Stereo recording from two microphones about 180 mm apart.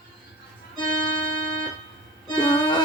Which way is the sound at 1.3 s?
90° left.